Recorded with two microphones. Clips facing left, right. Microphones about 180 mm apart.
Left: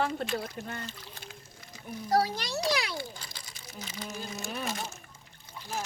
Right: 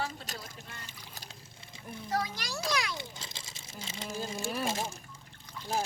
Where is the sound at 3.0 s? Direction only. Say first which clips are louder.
Left 3 dB; 25° right (ahead or behind).